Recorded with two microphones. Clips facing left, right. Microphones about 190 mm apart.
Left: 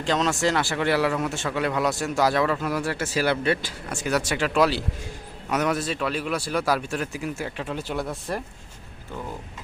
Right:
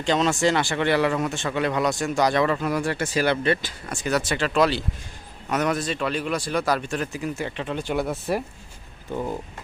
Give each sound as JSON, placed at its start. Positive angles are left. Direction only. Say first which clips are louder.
{"t": 0.0, "sound": "speech", "louder": "right 2 dB", "side_deg": 0}
{"t": 9.1, "sound": "speech", "louder": "right 7 dB", "side_deg": -20}